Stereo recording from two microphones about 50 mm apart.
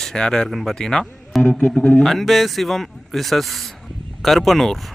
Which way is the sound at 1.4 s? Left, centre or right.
Centre.